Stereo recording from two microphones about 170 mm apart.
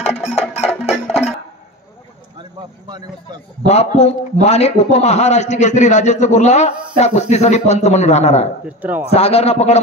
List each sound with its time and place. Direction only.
0.2 s music: 40° left (ahead or behind)
0.7 s music: centre (ahead or behind)
3.6 s a man's voice: 40° left (ahead or behind)
8.6 s speech: 10° right (ahead or behind)
9.1 s a man's voice: 35° left (ahead or behind)